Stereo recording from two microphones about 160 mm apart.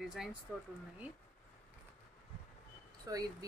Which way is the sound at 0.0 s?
5° right (ahead or behind).